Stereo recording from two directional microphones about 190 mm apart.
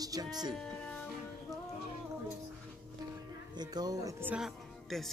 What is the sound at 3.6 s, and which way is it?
Music, 20° right (ahead or behind).